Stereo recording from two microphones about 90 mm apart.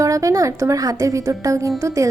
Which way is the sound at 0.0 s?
40° right (ahead or behind).